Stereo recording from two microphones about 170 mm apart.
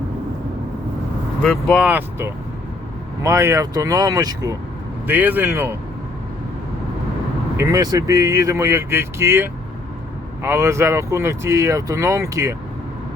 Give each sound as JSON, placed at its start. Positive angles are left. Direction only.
{"t": 1.4, "sound": "speech", "side_deg": 5}
{"t": 1.8, "sound": "speech", "side_deg": -10}
{"t": 5.0, "sound": "speech", "side_deg": -10}
{"t": 7.5, "sound": "speech", "side_deg": -20}